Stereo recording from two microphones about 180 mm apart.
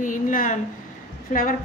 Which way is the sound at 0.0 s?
50° left (ahead or behind).